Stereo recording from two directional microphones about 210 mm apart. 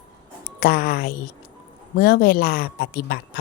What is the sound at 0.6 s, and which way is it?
Speech, 45° left (ahead or behind).